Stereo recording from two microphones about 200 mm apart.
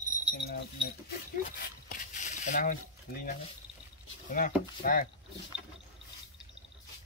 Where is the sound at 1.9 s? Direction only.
40° left (ahead or behind).